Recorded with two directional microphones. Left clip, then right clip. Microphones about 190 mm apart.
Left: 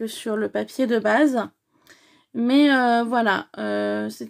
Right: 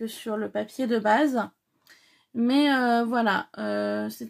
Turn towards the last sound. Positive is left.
turn(degrees=35)  # may be behind; listen again after turning